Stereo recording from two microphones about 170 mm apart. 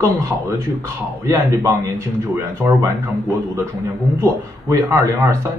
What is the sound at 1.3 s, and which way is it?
A man's voice, 15° right (ahead or behind).